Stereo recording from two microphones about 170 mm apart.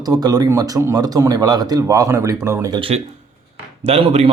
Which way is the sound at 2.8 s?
35° right (ahead or behind).